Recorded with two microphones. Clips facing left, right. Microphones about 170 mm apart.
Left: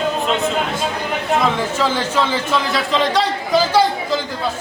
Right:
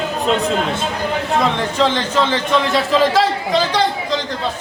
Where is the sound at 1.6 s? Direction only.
5° left (ahead or behind).